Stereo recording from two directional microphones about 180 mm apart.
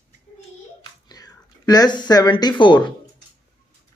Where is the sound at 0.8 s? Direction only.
20° left (ahead or behind).